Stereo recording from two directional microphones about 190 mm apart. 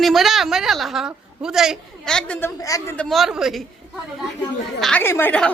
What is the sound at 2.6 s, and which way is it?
Speech, 15° left (ahead or behind).